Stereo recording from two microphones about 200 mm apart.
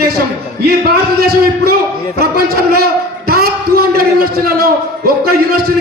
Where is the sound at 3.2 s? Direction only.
50° right (ahead or behind).